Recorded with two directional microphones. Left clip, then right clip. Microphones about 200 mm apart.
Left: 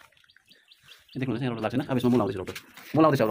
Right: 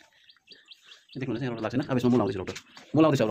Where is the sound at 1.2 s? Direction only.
20° left (ahead or behind).